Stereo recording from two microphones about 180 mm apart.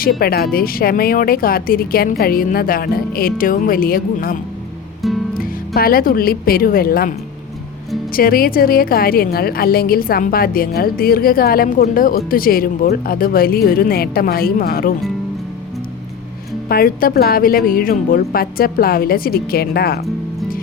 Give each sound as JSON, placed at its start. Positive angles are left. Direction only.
{"t": 0.2, "sound": "a woman's voice", "side_deg": 55}
{"t": 5.0, "sound": "music", "side_deg": 0}
{"t": 5.4, "sound": "speech", "side_deg": 55}
{"t": 8.1, "sound": "a woman's voice", "side_deg": 55}
{"t": 16.6, "sound": "a woman's voice", "side_deg": 55}